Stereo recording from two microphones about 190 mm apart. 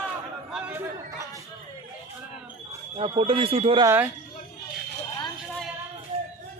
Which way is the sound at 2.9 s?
30° right (ahead or behind).